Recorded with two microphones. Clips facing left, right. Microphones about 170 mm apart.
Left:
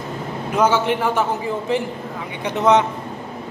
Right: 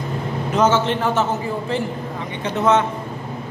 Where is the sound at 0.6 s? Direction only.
10° left (ahead or behind).